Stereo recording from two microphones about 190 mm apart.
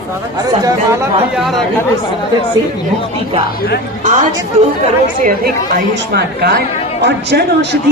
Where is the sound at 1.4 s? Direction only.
Centre (ahead or behind).